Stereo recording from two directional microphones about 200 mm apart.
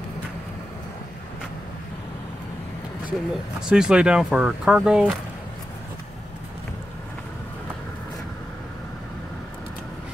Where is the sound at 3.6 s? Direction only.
5° right (ahead or behind).